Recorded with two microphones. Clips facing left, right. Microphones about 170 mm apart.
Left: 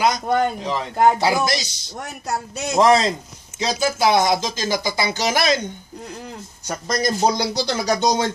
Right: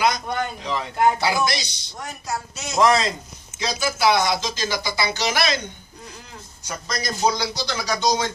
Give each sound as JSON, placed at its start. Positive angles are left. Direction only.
{"t": 0.0, "sound": "a man's voice", "side_deg": 40}
{"t": 2.8, "sound": "a man's voice", "side_deg": 25}
{"t": 4.2, "sound": "a man's voice", "side_deg": 45}
{"t": 6.7, "sound": "a man's voice", "side_deg": 50}